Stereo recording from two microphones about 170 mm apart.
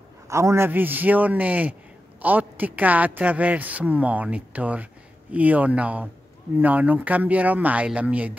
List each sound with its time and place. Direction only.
0.3 s a woman's voice: 15° right (ahead or behind)